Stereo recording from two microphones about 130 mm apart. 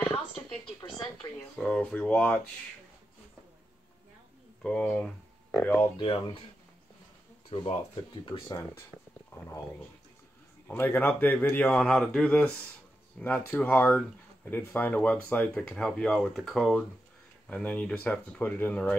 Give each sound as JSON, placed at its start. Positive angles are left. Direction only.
{"t": 1.1, "sound": "speech", "side_deg": 5}
{"t": 4.6, "sound": "speech", "side_deg": 5}
{"t": 5.9, "sound": "speech", "side_deg": 40}
{"t": 7.4, "sound": "speech", "side_deg": 40}
{"t": 8.5, "sound": "speech", "side_deg": 20}
{"t": 10.7, "sound": "speech", "side_deg": 15}